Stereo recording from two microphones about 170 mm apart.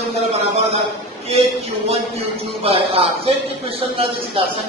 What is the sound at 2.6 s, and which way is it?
Speech, 35° right (ahead or behind).